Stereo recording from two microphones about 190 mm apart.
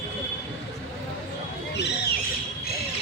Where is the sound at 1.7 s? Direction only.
65° left (ahead or behind).